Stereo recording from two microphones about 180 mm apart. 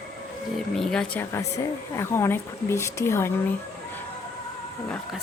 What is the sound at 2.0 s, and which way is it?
Speech, 15° left (ahead or behind).